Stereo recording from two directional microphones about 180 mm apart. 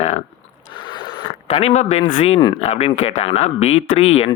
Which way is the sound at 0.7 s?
25° left (ahead or behind).